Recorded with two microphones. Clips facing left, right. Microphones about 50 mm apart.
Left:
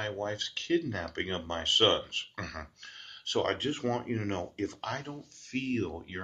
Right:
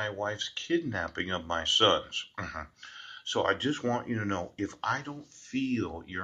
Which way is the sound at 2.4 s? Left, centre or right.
Right.